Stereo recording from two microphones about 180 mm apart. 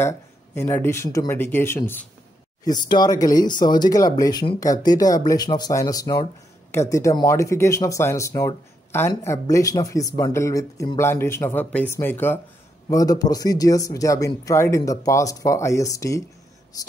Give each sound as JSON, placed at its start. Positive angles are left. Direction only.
{"t": 0.6, "sound": "speech", "side_deg": 10}